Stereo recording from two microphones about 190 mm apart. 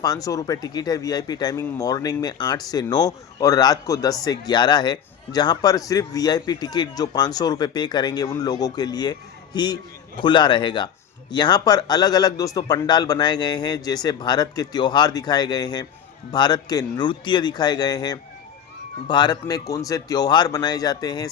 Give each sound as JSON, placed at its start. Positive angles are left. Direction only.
{"t": 0.0, "sound": "speech", "side_deg": 20}